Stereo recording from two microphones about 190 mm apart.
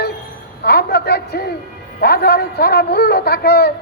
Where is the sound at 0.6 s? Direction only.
55° left (ahead or behind).